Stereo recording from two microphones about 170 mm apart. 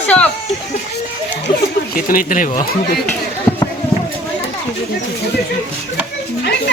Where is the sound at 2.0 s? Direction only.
55° left (ahead or behind).